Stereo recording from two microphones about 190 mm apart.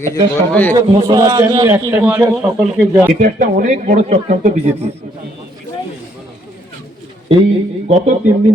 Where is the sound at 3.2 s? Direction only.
45° right (ahead or behind).